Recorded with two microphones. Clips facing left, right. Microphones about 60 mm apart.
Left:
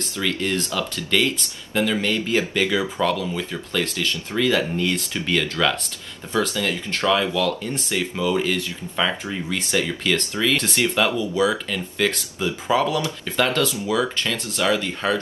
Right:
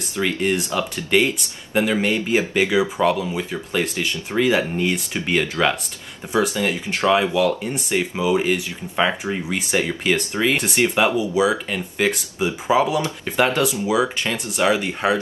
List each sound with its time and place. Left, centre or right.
0.1 s speech: right
9.6 s speech: right
11.1 s speech: centre